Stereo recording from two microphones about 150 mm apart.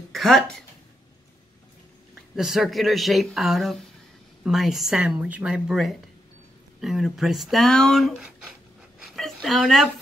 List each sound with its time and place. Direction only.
0.1 s speech: centre (ahead or behind)
2.3 s speech: centre (ahead or behind)
9.0 s a sound: centre (ahead or behind)